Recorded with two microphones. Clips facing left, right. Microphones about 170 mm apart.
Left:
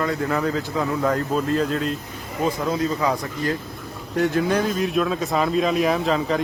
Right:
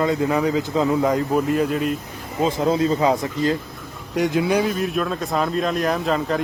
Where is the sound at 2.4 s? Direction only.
25° right (ahead or behind).